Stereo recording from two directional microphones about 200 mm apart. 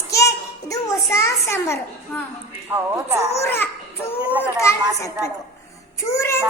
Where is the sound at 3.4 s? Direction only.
10° left (ahead or behind).